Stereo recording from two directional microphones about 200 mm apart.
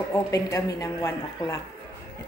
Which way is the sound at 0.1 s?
15° left (ahead or behind).